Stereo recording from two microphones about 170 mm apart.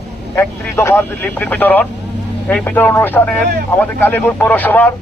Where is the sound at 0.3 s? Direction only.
15° left (ahead or behind).